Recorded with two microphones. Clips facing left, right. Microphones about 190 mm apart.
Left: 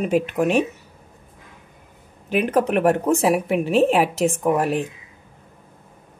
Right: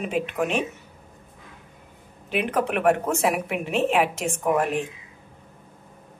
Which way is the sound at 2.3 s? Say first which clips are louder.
Left 5 dB; 40° left (ahead or behind).